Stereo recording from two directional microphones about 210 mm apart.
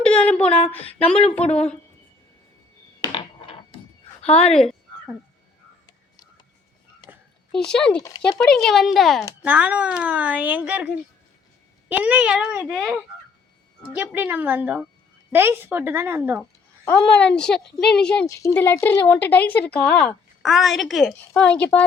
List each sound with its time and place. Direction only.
0.0 s a sound: 5° left (ahead or behind)
0.3 s speech: 30° left (ahead or behind)
3.0 s a sound: 25° left (ahead or behind)
4.4 s speech: 5° left (ahead or behind)
7.5 s a woman's voice: 5° left (ahead or behind)
17.2 s a woman's voice: 5° left (ahead or behind)
18.3 s a woman's voice: 15° left (ahead or behind)